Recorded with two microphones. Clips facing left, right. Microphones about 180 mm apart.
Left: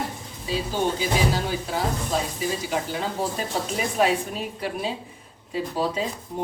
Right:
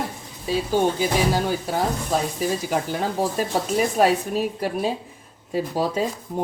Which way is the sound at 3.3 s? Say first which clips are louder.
Right 5 dB; 45° right (ahead or behind).